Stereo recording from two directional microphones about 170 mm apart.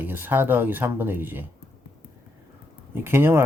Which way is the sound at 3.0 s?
15° right (ahead or behind).